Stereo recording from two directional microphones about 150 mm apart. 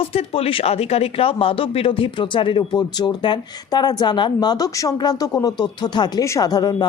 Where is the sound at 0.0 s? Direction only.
40° left (ahead or behind).